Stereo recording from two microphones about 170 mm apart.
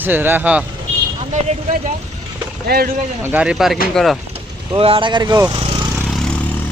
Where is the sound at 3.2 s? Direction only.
10° right (ahead or behind).